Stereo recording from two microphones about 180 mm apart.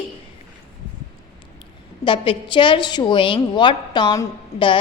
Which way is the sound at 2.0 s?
30° left (ahead or behind).